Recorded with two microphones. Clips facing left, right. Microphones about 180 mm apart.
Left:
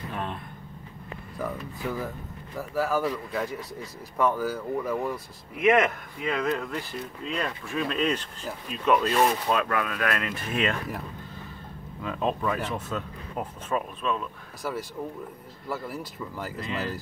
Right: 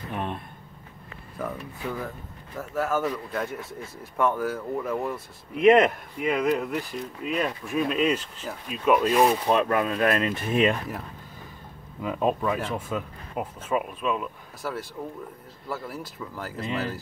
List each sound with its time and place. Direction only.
0.1 s a sound: 20° right (ahead or behind)
1.4 s speech: centre (ahead or behind)
5.7 s speech: 25° right (ahead or behind)
9.5 s speech: 25° right (ahead or behind)
12.0 s speech: 15° right (ahead or behind)
15.7 s speech: centre (ahead or behind)